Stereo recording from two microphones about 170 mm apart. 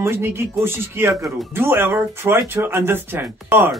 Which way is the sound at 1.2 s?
Centre (ahead or behind).